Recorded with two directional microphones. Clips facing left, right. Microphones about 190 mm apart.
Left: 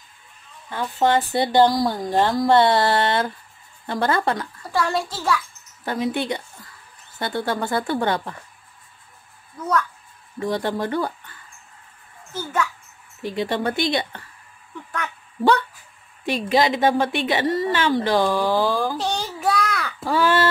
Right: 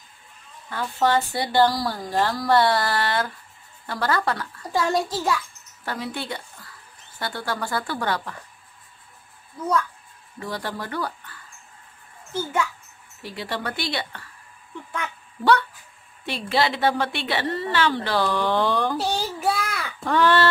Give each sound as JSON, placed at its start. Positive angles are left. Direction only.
{"t": 0.7, "sound": "speech", "side_deg": 20}
{"t": 4.7, "sound": "a child's voice", "side_deg": -15}
{"t": 5.9, "sound": "speech", "side_deg": 20}
{"t": 10.4, "sound": "speech", "side_deg": 20}
{"t": 13.2, "sound": "speech", "side_deg": 20}
{"t": 16.3, "sound": "a woman's voice", "side_deg": 15}